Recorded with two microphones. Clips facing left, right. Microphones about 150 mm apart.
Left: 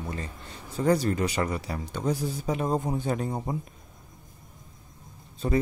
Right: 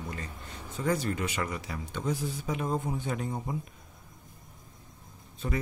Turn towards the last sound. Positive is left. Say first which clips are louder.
# left 7 dB
turn(degrees=35)  # may be behind; listen again after turning